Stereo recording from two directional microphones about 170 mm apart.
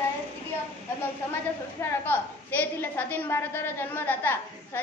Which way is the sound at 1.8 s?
10° left (ahead or behind).